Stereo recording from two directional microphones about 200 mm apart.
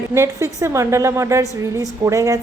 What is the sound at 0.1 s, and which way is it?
A woman's voice, 15° right (ahead or behind).